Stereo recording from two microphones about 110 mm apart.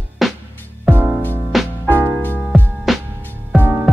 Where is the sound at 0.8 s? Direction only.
15° right (ahead or behind).